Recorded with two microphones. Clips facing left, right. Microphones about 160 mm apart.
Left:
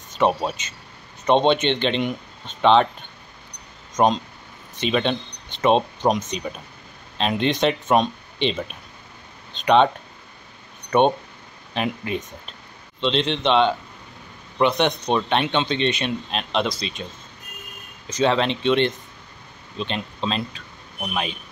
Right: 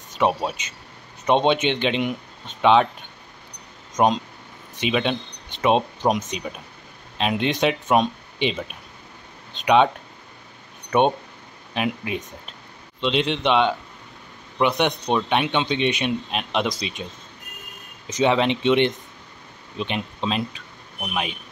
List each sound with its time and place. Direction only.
0.2 s speech: 5° right (ahead or behind)
3.9 s speech: 10° right (ahead or behind)
11.7 s speech: 5° right (ahead or behind)
14.8 s speech: 10° right (ahead or behind)